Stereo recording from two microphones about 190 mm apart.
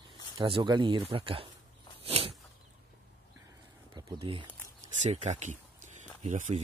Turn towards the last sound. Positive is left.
turn(degrees=-40)  # may be behind; listen again after turning